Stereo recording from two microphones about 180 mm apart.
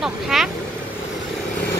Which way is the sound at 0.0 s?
Centre (ahead or behind).